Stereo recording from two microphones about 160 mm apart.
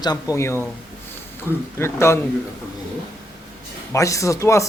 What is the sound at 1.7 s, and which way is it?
Speech, 15° left (ahead or behind).